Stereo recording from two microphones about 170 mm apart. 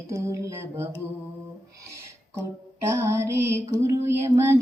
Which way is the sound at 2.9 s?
15° right (ahead or behind).